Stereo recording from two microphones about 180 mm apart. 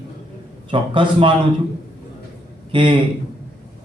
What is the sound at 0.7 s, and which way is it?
Speech, 30° right (ahead or behind).